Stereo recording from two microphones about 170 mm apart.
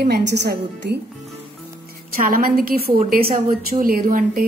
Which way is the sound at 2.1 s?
60° right (ahead or behind).